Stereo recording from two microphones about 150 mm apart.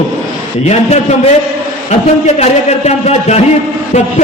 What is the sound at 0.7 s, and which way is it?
A man's voice, 45° left (ahead or behind).